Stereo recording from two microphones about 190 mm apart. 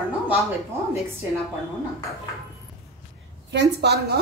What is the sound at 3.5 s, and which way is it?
Speech, 60° right (ahead or behind).